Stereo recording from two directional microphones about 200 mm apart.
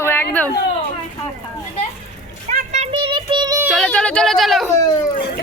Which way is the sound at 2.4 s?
35° right (ahead or behind).